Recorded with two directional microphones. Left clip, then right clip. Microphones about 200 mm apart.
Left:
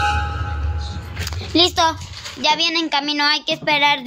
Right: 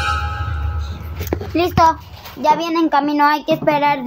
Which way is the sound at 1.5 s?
5° left (ahead or behind).